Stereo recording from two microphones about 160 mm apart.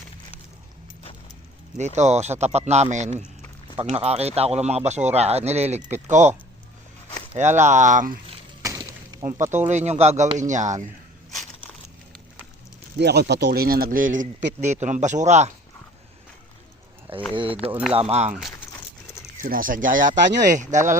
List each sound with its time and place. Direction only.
2.0 s speech: 45° right (ahead or behind)
7.3 s speech: 50° right (ahead or behind)
8.6 s a sound: 20° right (ahead or behind)
9.6 s speech: 45° right (ahead or behind)
13.0 s speech: 90° right; by 15.5 s 45° right (ahead or behind)
17.3 s speech: 35° right (ahead or behind)
17.7 s speech: 10° right (ahead or behind)
17.9 s speech: 40° right (ahead or behind)
19.4 s speech: 60° right (ahead or behind)